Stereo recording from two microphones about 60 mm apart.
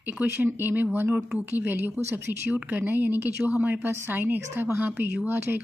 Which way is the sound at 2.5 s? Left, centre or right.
Right.